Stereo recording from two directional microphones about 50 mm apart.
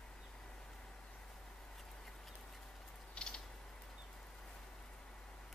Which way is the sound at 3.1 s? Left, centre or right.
Centre.